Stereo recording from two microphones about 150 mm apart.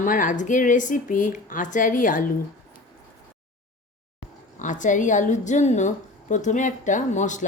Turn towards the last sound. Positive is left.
turn(degrees=55)  # may be behind; listen again after turning